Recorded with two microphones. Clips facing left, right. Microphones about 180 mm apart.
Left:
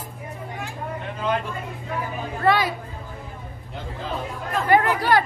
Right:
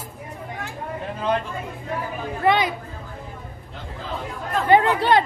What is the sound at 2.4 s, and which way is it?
Speech, 20° right (ahead or behind).